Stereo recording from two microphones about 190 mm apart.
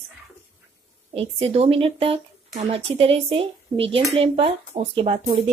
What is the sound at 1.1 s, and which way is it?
A woman's voice, 30° right (ahead or behind).